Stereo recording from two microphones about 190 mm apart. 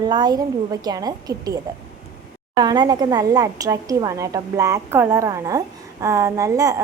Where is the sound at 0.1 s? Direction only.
20° right (ahead or behind).